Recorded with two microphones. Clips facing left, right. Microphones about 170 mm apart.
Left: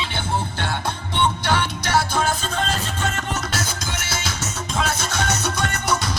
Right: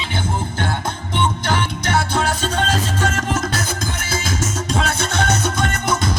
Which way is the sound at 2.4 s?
85° right.